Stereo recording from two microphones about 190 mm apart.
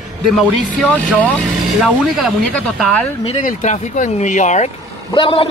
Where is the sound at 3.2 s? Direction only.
30° left (ahead or behind).